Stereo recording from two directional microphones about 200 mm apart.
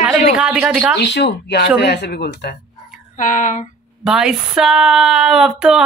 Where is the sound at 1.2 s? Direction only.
55° left (ahead or behind).